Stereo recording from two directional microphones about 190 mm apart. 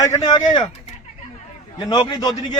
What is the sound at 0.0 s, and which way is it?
Speech, 20° left (ahead or behind).